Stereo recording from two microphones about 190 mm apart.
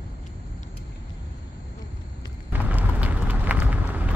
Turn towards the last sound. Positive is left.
turn(degrees=-10)  # may be behind; listen again after turning